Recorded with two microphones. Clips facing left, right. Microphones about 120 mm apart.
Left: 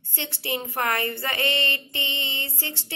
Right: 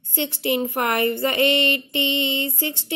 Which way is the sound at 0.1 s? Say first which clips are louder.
Right 8 dB; 15° right (ahead or behind).